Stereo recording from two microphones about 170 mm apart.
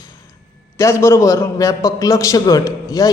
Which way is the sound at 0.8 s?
15° left (ahead or behind).